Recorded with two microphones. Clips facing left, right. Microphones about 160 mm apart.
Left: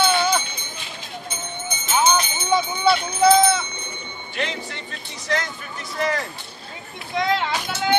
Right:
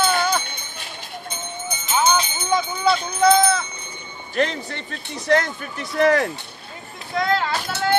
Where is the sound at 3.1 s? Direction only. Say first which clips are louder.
Even; 5° left (ahead or behind).